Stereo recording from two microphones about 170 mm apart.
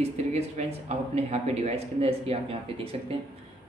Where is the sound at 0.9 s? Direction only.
40° right (ahead or behind).